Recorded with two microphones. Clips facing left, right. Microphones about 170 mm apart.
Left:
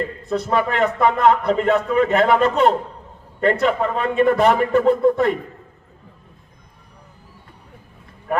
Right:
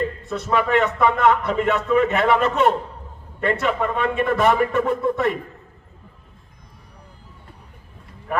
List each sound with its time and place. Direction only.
0.3 s a man's voice: 35° left (ahead or behind)